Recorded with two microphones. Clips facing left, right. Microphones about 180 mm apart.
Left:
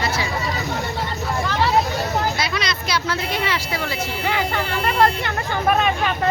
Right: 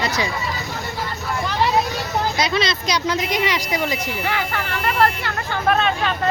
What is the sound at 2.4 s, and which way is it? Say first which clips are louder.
Speech: right 4 dB; 25° right (ahead or behind).